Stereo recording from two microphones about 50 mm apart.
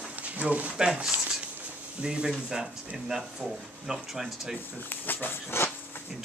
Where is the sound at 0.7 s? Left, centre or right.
Centre.